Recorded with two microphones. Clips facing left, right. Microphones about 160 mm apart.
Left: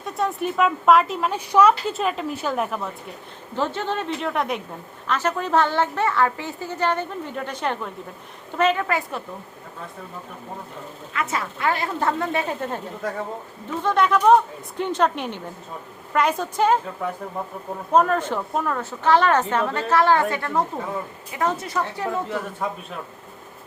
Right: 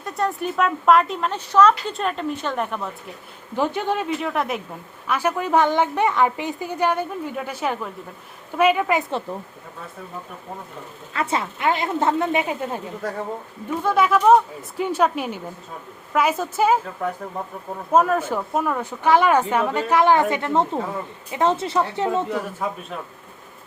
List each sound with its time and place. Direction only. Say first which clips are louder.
0.0 s a woman's voice: even; centre (ahead or behind)
3.5 s a woman's voice: right 3 dB; 15° right (ahead or behind)
11.1 s a woman's voice: right 3 dB; 30° right (ahead or behind)
22.6 s a woman's voice: left 1 dB; 5° right (ahead or behind)